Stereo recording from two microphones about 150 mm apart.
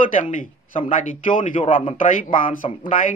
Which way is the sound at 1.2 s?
60° left (ahead or behind).